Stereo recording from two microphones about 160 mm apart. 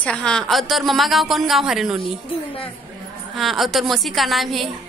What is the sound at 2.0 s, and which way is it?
Speech, 35° left (ahead or behind).